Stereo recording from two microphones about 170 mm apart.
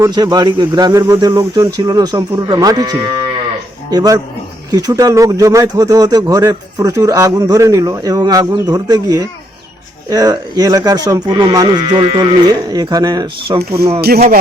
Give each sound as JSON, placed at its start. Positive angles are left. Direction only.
{"t": 0.0, "sound": "speech", "side_deg": -25}